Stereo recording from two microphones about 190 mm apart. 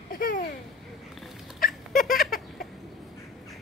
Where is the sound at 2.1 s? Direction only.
50° left (ahead or behind).